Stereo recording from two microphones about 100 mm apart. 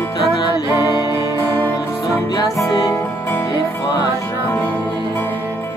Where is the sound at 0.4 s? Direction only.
40° left (ahead or behind).